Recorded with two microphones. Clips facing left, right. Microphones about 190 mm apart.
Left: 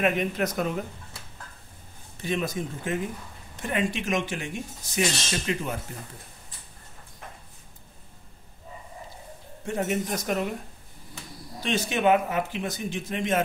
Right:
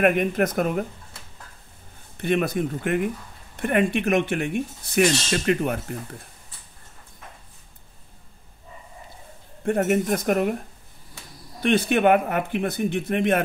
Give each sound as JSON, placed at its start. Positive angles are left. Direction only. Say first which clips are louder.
{"t": 0.0, "sound": "speech", "louder": "right 5 dB", "side_deg": -55}
{"t": 2.1, "sound": "speech", "louder": "right 6 dB", "side_deg": -60}
{"t": 9.7, "sound": "speech", "louder": "right 7 dB", "side_deg": -55}
{"t": 11.6, "sound": "speech", "louder": "right 5 dB", "side_deg": -60}